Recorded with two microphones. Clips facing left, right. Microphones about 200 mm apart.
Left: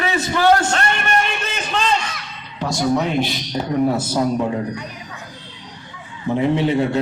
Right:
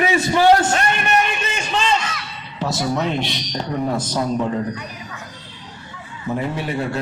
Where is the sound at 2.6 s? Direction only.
5° right (ahead or behind).